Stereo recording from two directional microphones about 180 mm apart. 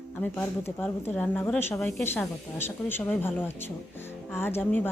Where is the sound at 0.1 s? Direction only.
10° left (ahead or behind).